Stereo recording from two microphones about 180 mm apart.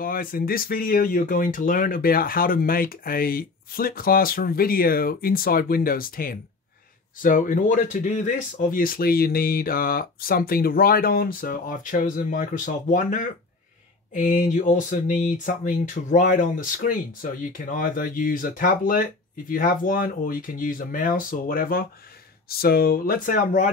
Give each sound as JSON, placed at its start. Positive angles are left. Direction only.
{"t": 0.0, "sound": "speech", "side_deg": 50}